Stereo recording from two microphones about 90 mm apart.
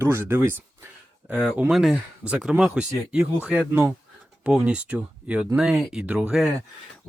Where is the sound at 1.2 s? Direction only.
15° right (ahead or behind).